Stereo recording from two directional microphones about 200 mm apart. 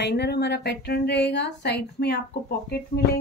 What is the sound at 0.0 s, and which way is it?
Speech, 55° left (ahead or behind).